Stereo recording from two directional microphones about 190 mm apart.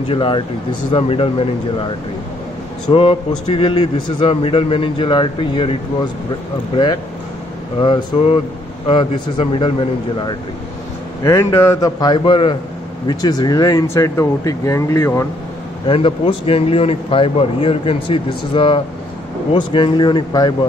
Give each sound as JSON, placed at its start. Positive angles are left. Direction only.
{"t": 0.1, "sound": "speech", "side_deg": 25}
{"t": 2.9, "sound": "speech", "side_deg": 30}
{"t": 11.2, "sound": "speech", "side_deg": 15}
{"t": 15.9, "sound": "speech", "side_deg": 30}